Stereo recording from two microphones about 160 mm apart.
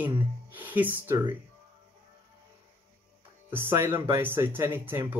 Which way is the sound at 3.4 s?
15° right (ahead or behind).